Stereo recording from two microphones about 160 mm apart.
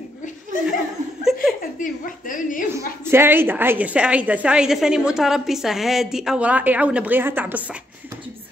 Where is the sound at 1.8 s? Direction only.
55° left (ahead or behind).